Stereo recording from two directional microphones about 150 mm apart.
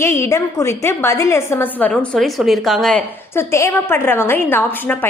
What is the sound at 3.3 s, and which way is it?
A woman's voice, 15° left (ahead or behind).